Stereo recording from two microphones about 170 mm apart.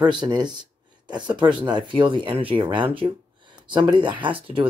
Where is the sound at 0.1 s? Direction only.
25° right (ahead or behind).